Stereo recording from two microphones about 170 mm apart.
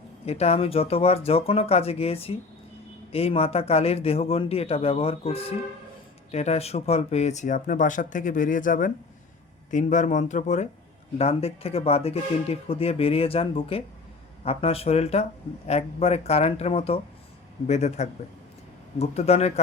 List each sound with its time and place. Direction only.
0.3 s speech: 35° left (ahead or behind)